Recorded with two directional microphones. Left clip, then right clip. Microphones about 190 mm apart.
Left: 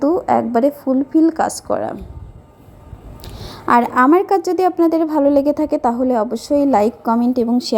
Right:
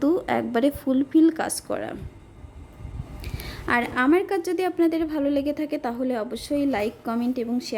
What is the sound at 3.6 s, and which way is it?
A woman's voice, 20° left (ahead or behind).